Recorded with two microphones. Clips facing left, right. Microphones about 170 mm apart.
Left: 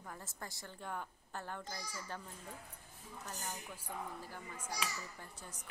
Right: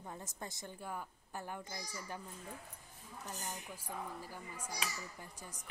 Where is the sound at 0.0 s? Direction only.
20° right (ahead or behind).